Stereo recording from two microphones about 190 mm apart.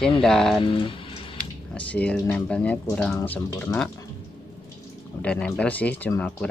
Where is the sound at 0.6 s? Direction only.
25° left (ahead or behind).